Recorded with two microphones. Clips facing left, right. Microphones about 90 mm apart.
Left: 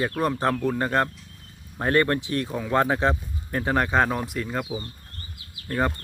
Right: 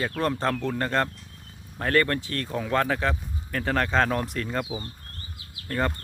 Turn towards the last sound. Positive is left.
turn(degrees=10)  # may be behind; listen again after turning